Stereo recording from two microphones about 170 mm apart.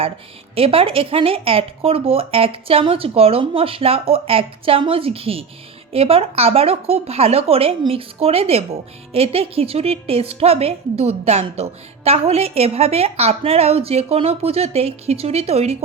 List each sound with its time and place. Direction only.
0.5 s speech: 35° right (ahead or behind)